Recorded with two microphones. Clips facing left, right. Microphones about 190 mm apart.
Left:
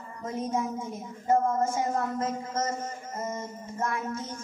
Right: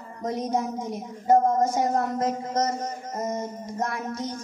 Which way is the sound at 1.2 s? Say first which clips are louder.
Right 5 dB; 40° right (ahead or behind).